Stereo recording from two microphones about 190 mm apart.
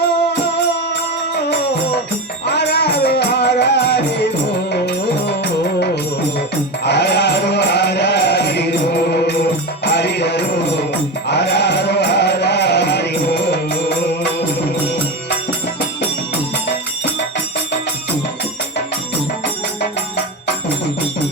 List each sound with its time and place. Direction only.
2.5 s music: 60° left (ahead or behind)
6.8 s music: 60° left (ahead or behind)
9.8 s music: 60° left (ahead or behind)